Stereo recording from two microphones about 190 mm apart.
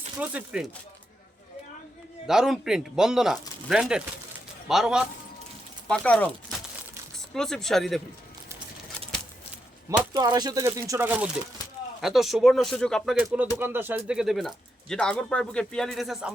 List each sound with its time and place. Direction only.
0.2 s speech: 5° right (ahead or behind)
2.2 s speech: 5° right (ahead or behind)
7.3 s speech: centre (ahead or behind)
10.1 s speech: 20° right (ahead or behind); by 16.3 s centre (ahead or behind)